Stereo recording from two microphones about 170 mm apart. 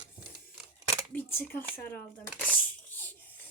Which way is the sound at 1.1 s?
10° left (ahead or behind).